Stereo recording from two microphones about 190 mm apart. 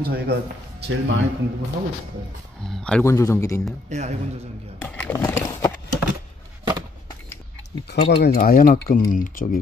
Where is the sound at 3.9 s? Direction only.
35° right (ahead or behind).